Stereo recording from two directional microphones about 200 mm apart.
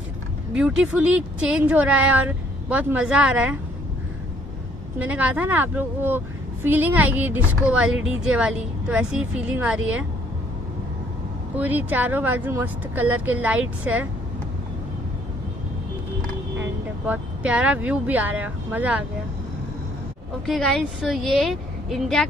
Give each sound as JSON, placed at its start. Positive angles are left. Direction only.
{"t": 0.6, "sound": "a woman's voice", "side_deg": -5}
{"t": 4.9, "sound": "a woman's voice", "side_deg": -5}
{"t": 11.5, "sound": "a woman's voice", "side_deg": -10}
{"t": 16.5, "sound": "speech", "side_deg": -10}
{"t": 20.4, "sound": "a woman's voice", "side_deg": 0}